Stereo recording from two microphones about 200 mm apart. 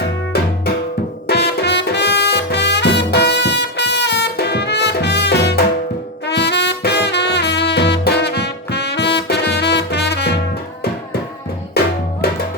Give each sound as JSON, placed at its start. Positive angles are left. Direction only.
{"t": 0.3, "sound": "music", "side_deg": 50}
{"t": 11.8, "sound": "music", "side_deg": 55}